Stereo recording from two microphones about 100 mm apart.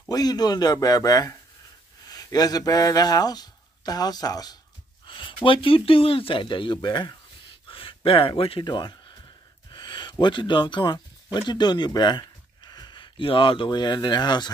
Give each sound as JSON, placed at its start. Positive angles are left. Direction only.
{"t": 0.1, "sound": "a man's voice", "side_deg": 40}
{"t": 5.0, "sound": "speech", "side_deg": 55}
{"t": 7.6, "sound": "a sound", "side_deg": 60}
{"t": 8.6, "sound": "speech", "side_deg": 50}